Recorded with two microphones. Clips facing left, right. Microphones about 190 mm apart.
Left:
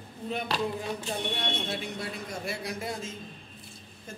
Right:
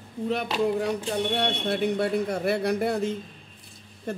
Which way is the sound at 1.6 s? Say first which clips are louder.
Right 10 dB; 60° right (ahead or behind).